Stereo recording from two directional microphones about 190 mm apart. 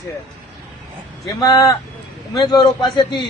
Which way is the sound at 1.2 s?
20° left (ahead or behind).